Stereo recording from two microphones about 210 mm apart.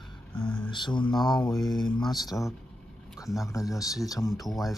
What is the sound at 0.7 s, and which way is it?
Mantra, 20° left (ahead or behind).